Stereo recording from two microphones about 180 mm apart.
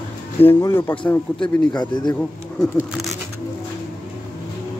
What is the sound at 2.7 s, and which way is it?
Speech, centre (ahead or behind).